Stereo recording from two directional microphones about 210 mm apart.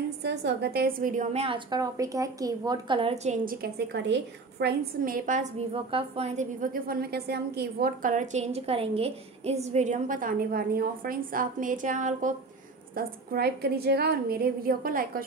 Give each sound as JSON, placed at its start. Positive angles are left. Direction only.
{"t": 0.2, "sound": "a woman's voice", "side_deg": -55}
{"t": 3.4, "sound": "a woman's voice", "side_deg": -50}